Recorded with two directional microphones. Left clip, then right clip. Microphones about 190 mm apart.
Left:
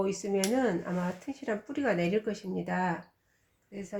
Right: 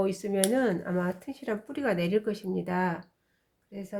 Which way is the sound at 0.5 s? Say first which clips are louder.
Right 2 dB; 25° right (ahead or behind).